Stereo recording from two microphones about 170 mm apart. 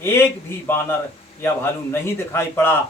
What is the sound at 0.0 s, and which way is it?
Speech, 15° left (ahead or behind).